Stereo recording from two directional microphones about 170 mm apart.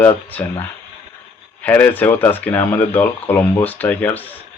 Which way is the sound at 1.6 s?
10° left (ahead or behind).